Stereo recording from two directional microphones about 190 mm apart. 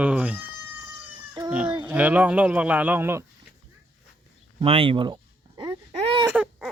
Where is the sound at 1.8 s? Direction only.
5° right (ahead or behind).